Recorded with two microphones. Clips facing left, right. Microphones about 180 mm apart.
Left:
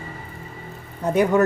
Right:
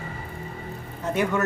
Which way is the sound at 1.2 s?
35° left (ahead or behind).